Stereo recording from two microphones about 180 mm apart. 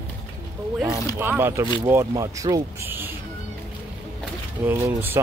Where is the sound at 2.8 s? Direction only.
10° right (ahead or behind).